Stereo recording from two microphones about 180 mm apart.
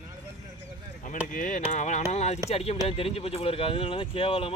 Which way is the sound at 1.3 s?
45° left (ahead or behind).